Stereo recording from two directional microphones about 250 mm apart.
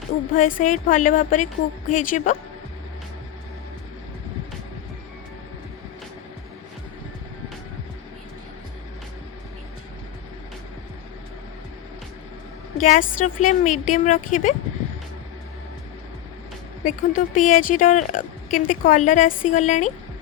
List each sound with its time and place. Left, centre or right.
0.3 s a woman's voice: left
12.7 s a woman's voice: left
16.8 s a woman's voice: left